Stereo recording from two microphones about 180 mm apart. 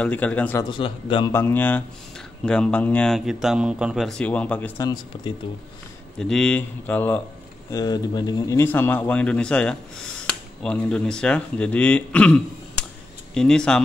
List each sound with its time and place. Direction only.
0.0 s speech: 10° left (ahead or behind)
0.7 s a man's voice: 30° left (ahead or behind)
1.3 s speech: 10° left (ahead or behind)
4.8 s a man's voice: 25° left (ahead or behind)
6.1 s speech: 5° left (ahead or behind)
7.7 s speech: 20° left (ahead or behind); by 13.7 s 5° left (ahead or behind)